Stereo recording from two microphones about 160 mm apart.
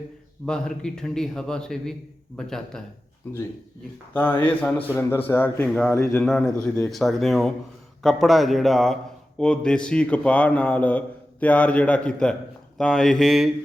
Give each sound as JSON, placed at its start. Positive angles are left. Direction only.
{"t": 0.4, "sound": "a man's voice", "side_deg": 5}
{"t": 4.1, "sound": "a man's voice", "side_deg": 10}
{"t": 5.9, "sound": "a man's voice", "side_deg": 15}
{"t": 6.2, "sound": "a man's voice", "side_deg": 5}